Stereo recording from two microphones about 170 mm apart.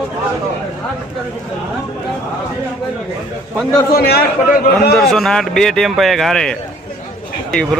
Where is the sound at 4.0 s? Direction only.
65° left (ahead or behind).